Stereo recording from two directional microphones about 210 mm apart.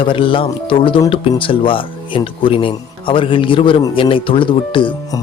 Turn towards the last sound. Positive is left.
turn(degrees=25)  # may be behind; listen again after turning